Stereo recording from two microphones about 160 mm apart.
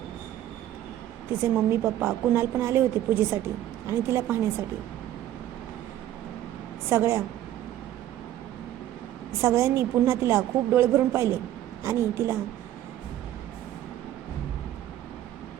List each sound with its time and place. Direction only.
1.3 s a woman's voice: 15° right (ahead or behind)
6.9 s a woman's voice: 15° right (ahead or behind)
9.4 s a woman's voice: 15° right (ahead or behind)